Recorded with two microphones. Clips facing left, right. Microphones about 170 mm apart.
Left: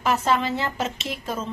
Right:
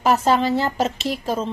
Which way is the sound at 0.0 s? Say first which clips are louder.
Right 5 dB; 35° right (ahead or behind).